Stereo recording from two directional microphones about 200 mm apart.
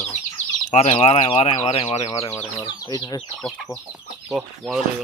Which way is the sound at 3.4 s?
Centre (ahead or behind).